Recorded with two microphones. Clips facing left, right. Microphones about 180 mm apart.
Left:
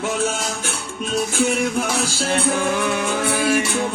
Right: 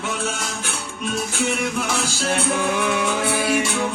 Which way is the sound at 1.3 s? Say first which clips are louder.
Left 4 dB; 50° left (ahead or behind).